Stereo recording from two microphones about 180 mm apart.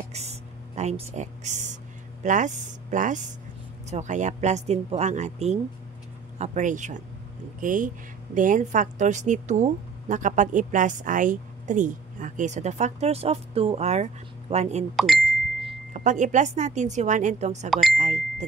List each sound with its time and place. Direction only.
0.1 s a sound: 35° right (ahead or behind)
2.2 s a woman's voice: 45° right (ahead or behind)
15.0 s speech: centre (ahead or behind)
15.9 s a woman's voice: 45° right (ahead or behind)
17.6 s speech: centre (ahead or behind)
17.9 s a woman's voice: 45° right (ahead or behind)